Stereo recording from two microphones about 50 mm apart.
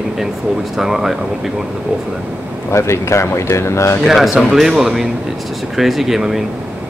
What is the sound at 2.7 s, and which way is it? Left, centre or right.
Speech, left.